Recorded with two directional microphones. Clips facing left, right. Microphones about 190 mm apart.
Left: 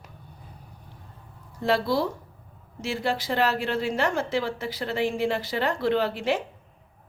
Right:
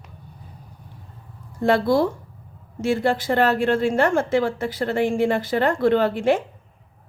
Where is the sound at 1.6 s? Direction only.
50° right (ahead or behind).